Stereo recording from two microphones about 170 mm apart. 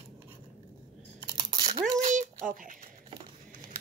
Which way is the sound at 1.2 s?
25° right (ahead or behind).